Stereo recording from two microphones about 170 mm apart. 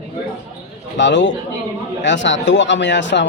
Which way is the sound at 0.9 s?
90° left.